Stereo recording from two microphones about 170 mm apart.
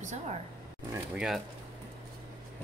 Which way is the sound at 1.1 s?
Centre (ahead or behind).